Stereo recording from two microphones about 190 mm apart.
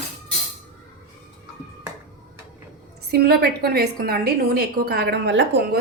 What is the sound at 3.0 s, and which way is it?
A woman's voice, 55° right (ahead or behind).